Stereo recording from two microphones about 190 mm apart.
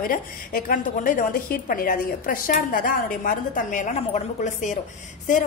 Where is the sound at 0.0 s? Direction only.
50° left (ahead or behind).